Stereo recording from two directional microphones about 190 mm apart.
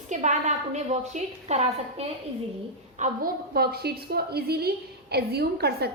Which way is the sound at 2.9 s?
45° right (ahead or behind).